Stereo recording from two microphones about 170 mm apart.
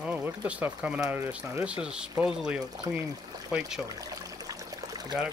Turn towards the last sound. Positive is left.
turn(degrees=-20)  # may be behind; listen again after turning